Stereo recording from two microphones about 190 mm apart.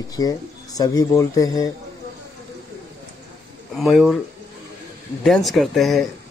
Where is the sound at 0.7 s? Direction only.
20° left (ahead or behind).